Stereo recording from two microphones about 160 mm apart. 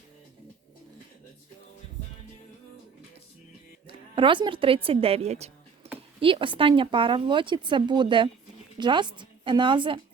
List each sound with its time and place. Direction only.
3.8 s a woman's voice: 35° right (ahead or behind)